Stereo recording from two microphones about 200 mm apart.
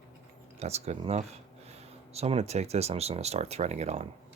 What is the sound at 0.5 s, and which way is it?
Speech, 30° right (ahead or behind).